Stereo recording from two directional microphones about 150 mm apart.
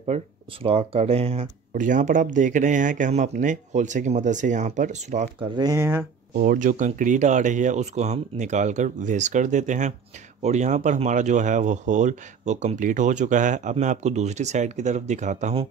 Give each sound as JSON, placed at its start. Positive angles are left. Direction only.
{"t": 0.0, "sound": "speech", "side_deg": -45}
{"t": 1.7, "sound": "speech", "side_deg": -60}
{"t": 5.4, "sound": "speech", "side_deg": -30}
{"t": 5.8, "sound": "speech", "side_deg": -15}
{"t": 6.3, "sound": "speech", "side_deg": -65}